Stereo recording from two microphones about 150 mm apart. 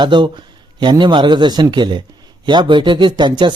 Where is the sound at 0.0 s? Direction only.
30° right (ahead or behind).